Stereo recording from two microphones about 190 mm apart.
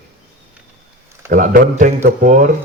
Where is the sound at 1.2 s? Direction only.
45° right (ahead or behind).